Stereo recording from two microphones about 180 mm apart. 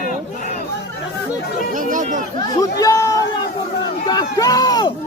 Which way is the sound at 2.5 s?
20° left (ahead or behind).